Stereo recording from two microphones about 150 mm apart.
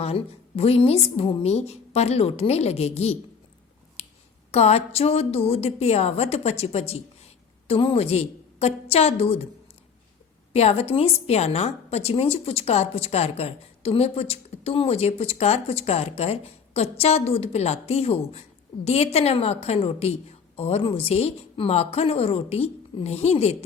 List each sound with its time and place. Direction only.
0.0 s a woman's voice: 40° left (ahead or behind)
4.0 s a sound: 45° left (ahead or behind)
4.5 s a woman's voice: 45° left (ahead or behind)
10.5 s a woman's voice: 45° left (ahead or behind)